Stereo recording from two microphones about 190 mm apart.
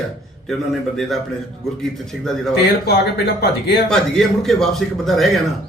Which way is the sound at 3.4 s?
55° left (ahead or behind).